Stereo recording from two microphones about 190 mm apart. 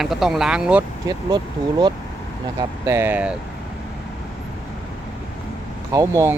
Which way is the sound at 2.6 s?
15° right (ahead or behind).